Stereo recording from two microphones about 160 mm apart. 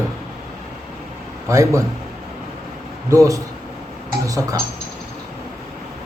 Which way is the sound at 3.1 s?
20° right (ahead or behind).